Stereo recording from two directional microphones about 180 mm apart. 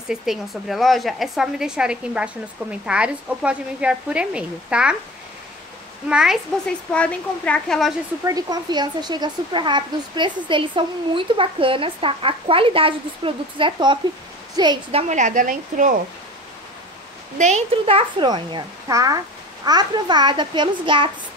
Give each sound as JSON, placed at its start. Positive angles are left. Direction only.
{"t": 0.1, "sound": "a woman's voice", "side_deg": 0}
{"t": 6.0, "sound": "a woman's voice", "side_deg": -5}
{"t": 6.9, "sound": "a woman's voice", "side_deg": 5}
{"t": 8.3, "sound": "a child's voice", "side_deg": -20}
{"t": 17.4, "sound": "a child's voice", "side_deg": -40}